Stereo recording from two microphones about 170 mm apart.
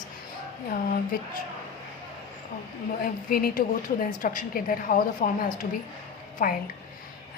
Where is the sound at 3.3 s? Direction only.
55° left (ahead or behind).